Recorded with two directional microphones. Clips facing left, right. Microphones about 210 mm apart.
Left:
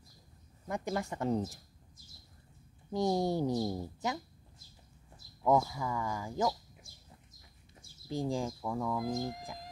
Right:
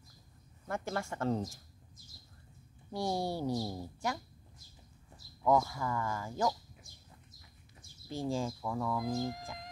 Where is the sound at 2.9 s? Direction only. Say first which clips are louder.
Left 4 dB; 20° left (ahead or behind).